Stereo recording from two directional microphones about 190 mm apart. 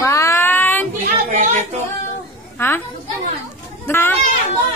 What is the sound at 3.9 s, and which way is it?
Speech, 10° left (ahead or behind).